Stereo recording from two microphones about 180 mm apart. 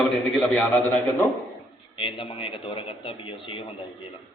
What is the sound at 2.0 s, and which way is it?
A man's voice, 30° left (ahead or behind).